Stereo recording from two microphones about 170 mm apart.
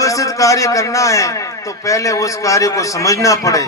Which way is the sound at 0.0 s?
20° left (ahead or behind).